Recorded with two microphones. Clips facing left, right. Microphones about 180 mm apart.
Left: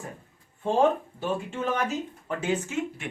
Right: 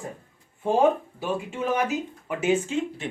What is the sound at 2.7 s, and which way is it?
Speech, 30° right (ahead or behind).